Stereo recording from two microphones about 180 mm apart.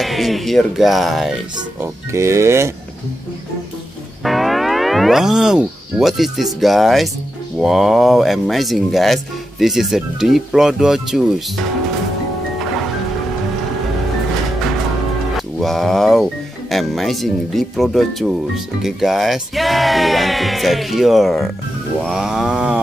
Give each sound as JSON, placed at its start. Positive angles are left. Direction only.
{"t": 0.0, "sound": "speech", "side_deg": 0}
{"t": 1.8, "sound": "speech", "side_deg": -15}
{"t": 4.2, "sound": "speech", "side_deg": 0}
{"t": 15.3, "sound": "music", "side_deg": 0}
{"t": 16.7, "sound": "speech", "side_deg": 0}